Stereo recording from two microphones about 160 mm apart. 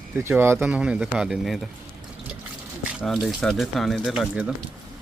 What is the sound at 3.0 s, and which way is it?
Speech, centre (ahead or behind).